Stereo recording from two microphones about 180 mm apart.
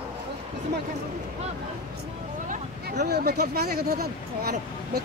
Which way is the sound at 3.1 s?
65° right (ahead or behind).